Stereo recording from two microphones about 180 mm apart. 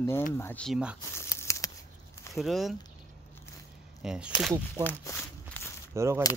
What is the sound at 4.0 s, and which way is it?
Speech, 5° right (ahead or behind).